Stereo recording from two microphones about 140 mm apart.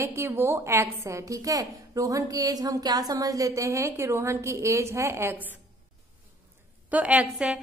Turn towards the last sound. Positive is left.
turn(degrees=-10)  # may be behind; listen again after turning